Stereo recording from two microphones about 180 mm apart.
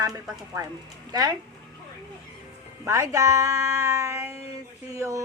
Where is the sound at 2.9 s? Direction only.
15° right (ahead or behind).